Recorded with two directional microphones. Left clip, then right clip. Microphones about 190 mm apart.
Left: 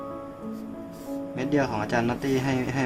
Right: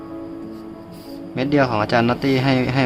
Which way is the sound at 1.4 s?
20° right (ahead or behind).